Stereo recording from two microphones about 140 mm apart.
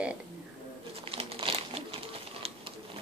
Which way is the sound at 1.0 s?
40° right (ahead or behind).